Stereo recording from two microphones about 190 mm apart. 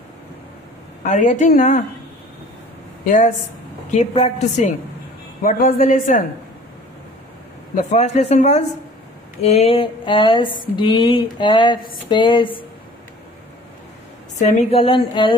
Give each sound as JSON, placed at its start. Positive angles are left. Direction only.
{"t": 1.0, "sound": "a woman's voice", "side_deg": 40}
{"t": 3.9, "sound": "a woman's voice", "side_deg": 35}
{"t": 5.4, "sound": "a woman's voice", "side_deg": 50}
{"t": 7.9, "sound": "a woman's voice", "side_deg": 35}
{"t": 9.4, "sound": "a sound", "side_deg": 35}
{"t": 14.4, "sound": "a woman's voice", "side_deg": 35}